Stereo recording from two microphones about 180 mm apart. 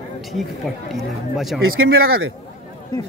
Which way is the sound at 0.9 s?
Centre (ahead or behind).